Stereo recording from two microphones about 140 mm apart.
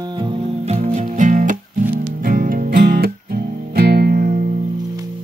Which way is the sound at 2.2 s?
90° right.